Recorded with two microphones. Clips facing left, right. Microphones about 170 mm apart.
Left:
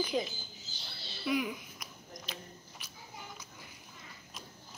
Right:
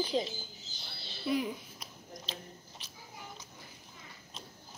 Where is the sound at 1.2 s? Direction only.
35° right (ahead or behind).